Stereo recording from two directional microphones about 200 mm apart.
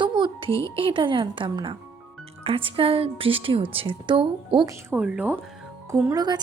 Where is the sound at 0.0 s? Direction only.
25° right (ahead or behind).